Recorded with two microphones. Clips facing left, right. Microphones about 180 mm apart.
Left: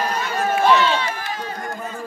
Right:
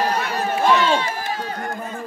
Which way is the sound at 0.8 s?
45° right (ahead or behind).